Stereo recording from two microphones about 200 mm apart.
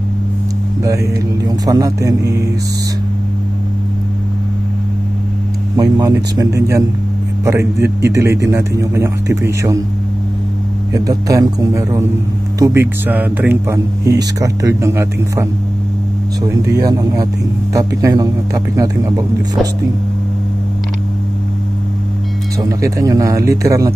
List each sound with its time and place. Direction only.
1.4 s a man's voice: 15° right (ahead or behind)
5.8 s a man's voice: 20° right (ahead or behind)
10.9 s a man's voice: 15° right (ahead or behind)
16.8 s a man's voice: 20° right (ahead or behind)
22.6 s a man's voice: 15° right (ahead or behind)